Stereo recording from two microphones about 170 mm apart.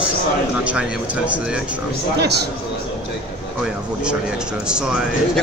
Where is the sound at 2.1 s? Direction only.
75° right (ahead or behind).